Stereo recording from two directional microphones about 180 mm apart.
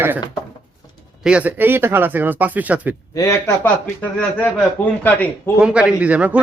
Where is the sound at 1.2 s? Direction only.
5° right (ahead or behind).